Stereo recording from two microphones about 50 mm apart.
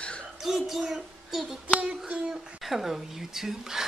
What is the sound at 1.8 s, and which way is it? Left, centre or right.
Speech, centre.